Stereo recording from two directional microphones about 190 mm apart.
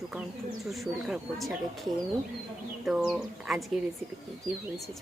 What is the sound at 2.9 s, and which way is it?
Speech, 5° right (ahead or behind).